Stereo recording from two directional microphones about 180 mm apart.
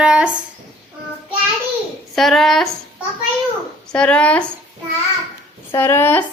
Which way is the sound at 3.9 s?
5° left (ahead or behind).